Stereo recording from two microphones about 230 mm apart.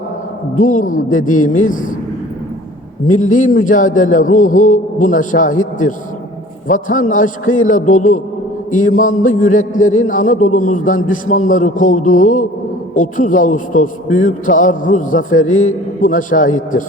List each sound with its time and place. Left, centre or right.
0.5 s a man's voice: left
3.1 s a man's voice: left
6.7 s a man's voice: left